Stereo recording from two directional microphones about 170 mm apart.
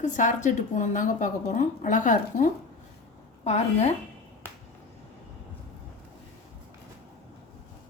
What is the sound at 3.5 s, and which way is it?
Speech, 40° left (ahead or behind).